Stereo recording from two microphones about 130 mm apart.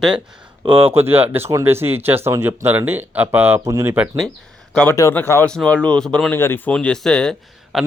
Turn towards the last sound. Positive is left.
turn(degrees=5)  # may be behind; listen again after turning